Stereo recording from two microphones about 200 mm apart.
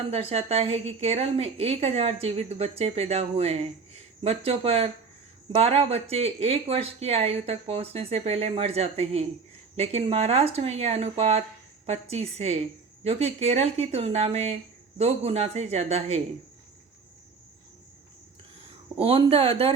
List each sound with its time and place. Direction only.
0.1 s a woman's voice: 30° right (ahead or behind)
18.9 s speech: 30° right (ahead or behind)